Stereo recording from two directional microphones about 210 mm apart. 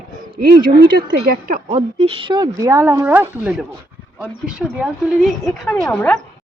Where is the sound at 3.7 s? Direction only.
5° left (ahead or behind).